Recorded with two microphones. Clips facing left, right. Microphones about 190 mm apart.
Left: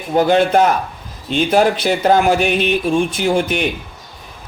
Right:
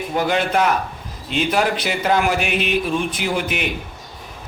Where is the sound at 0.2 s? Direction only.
35° left (ahead or behind).